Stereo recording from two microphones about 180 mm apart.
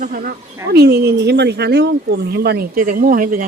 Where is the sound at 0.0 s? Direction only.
50° right (ahead or behind).